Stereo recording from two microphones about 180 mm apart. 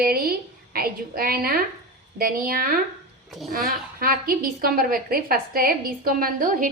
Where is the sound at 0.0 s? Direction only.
55° right (ahead or behind).